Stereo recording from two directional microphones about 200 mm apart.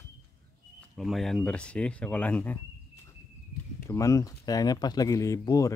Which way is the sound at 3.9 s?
15° left (ahead or behind).